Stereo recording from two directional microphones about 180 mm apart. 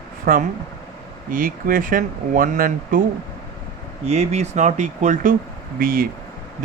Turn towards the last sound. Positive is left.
turn(degrees=-55)  # may be behind; listen again after turning